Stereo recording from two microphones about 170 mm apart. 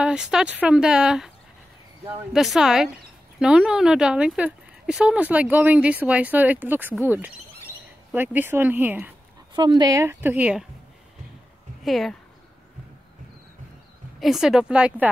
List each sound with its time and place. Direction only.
0.0 s speech: 5° right (ahead or behind)
2.3 s speech: centre (ahead or behind)
9.6 s speech: 25° right (ahead or behind); by 10.6 s 10° right (ahead or behind)
11.8 s speech: centre (ahead or behind)
14.2 s speech: 5° right (ahead or behind)